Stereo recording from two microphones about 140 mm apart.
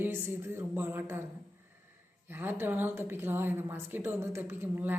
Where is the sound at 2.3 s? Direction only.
15° right (ahead or behind).